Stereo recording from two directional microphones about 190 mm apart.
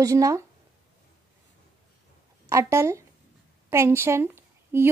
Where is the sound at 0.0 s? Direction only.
15° right (ahead or behind).